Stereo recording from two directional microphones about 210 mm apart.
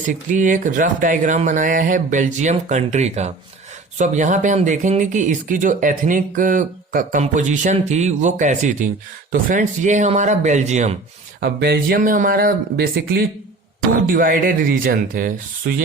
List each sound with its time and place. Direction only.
0.1 s speech: 40° right (ahead or behind)
11.3 s speech: 50° right (ahead or behind)